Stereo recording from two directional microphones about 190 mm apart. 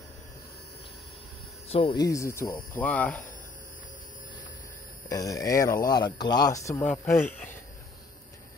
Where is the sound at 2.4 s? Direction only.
50° left (ahead or behind).